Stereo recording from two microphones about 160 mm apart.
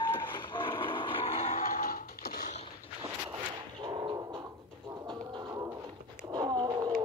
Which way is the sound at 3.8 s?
30° right (ahead or behind).